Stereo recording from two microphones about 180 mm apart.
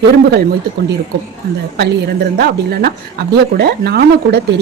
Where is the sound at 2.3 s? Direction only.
60° right (ahead or behind).